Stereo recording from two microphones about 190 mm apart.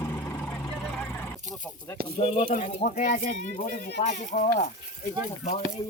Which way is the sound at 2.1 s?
30° left (ahead or behind).